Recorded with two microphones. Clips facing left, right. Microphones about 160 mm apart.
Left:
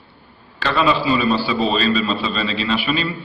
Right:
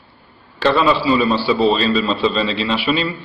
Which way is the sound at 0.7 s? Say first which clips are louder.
Right 1 dB; 35° right (ahead or behind).